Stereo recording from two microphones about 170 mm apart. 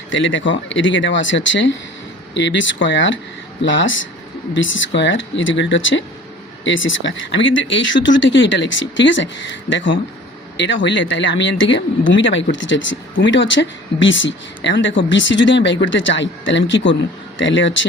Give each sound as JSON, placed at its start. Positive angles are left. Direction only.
{"t": 0.1, "sound": "speech", "side_deg": 90}